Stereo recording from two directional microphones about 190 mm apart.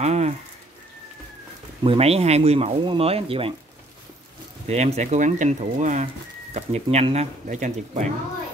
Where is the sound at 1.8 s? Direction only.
30° right (ahead or behind).